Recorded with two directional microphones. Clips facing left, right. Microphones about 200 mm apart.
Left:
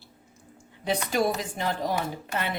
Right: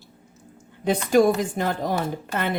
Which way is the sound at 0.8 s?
50° right (ahead or behind).